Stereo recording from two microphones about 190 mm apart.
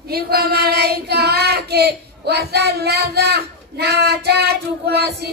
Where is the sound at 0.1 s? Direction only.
55° right (ahead or behind).